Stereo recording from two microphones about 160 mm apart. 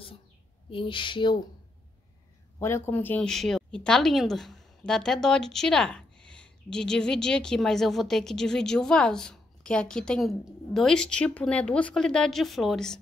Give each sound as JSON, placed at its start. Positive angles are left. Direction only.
{"t": 0.7, "sound": "speech", "side_deg": 30}
{"t": 2.6, "sound": "a woman's voice", "side_deg": 15}